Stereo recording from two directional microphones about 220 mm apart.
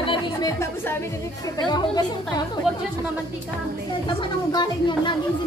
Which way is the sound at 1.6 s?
20° left (ahead or behind).